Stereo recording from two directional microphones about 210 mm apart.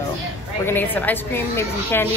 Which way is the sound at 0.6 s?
10° left (ahead or behind).